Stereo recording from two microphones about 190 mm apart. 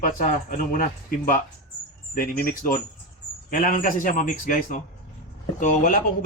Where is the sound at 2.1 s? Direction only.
50° left (ahead or behind).